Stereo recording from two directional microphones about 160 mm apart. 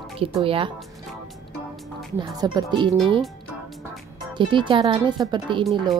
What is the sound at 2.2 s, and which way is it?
Speech, 25° right (ahead or behind).